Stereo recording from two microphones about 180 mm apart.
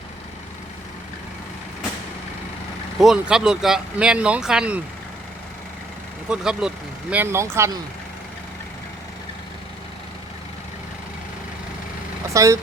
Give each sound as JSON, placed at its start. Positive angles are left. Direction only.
{"t": 3.0, "sound": "speech", "side_deg": -5}
{"t": 6.2, "sound": "speech", "side_deg": -5}
{"t": 12.3, "sound": "speech", "side_deg": -15}